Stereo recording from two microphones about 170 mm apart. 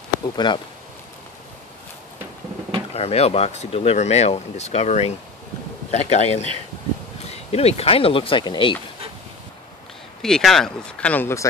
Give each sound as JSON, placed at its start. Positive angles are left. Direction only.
{"t": 0.4, "sound": "speech", "side_deg": 25}
{"t": 2.9, "sound": "speech", "side_deg": 35}
{"t": 10.2, "sound": "speech", "side_deg": 0}